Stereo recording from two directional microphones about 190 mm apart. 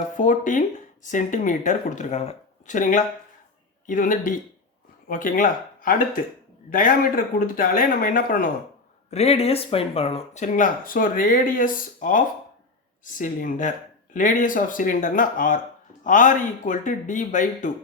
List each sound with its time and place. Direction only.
0.2 s speech: 40° left (ahead or behind)
7.3 s speech: 45° left (ahead or behind)
9.0 s speech: 35° left (ahead or behind)